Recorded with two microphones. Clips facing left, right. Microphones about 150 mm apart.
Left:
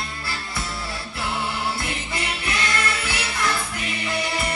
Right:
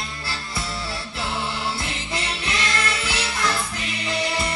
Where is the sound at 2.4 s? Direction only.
25° right (ahead or behind).